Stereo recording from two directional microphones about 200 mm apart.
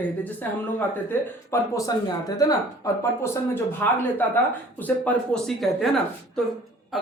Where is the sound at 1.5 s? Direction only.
15° left (ahead or behind).